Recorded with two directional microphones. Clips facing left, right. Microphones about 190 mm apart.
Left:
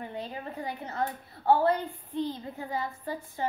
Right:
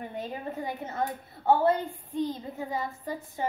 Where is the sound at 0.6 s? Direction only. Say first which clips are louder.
Even; 20° right (ahead or behind).